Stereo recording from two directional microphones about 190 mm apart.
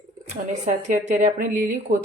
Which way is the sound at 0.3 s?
40° right (ahead or behind).